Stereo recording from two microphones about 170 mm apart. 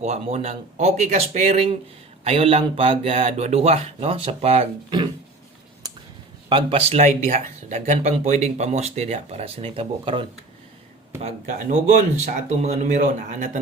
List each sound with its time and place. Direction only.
0.0 s speech: 40° right (ahead or behind)
5.8 s a sound: 25° right (ahead or behind)
6.5 s speech: 30° right (ahead or behind)
11.2 s speech: 40° right (ahead or behind)